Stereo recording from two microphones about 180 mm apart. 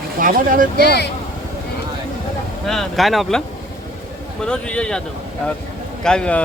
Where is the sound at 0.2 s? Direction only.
50° right (ahead or behind).